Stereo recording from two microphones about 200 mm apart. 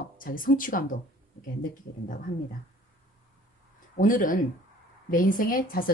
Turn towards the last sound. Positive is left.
turn(degrees=45)  # may be behind; listen again after turning